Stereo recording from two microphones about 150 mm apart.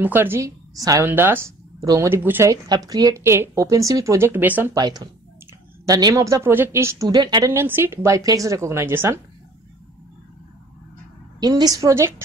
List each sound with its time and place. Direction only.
0.0 s speech: 15° right (ahead or behind)
4.7 s speech: 25° right (ahead or behind)
7.5 s speech: 15° right (ahead or behind)
11.3 s speech: 25° right (ahead or behind)